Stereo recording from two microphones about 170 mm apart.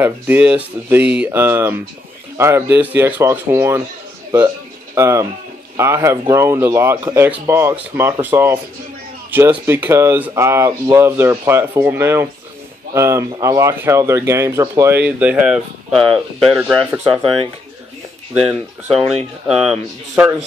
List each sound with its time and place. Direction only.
0.0 s speech: 10° right (ahead or behind)
4.9 s speech: 15° right (ahead or behind); by 16.7 s centre (ahead or behind)
16.9 s speech: 15° right (ahead or behind)
17.2 s speech: 30° right (ahead or behind)
18.3 s speech: centre (ahead or behind)